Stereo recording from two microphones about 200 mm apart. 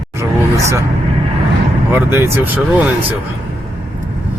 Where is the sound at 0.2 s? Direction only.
15° right (ahead or behind).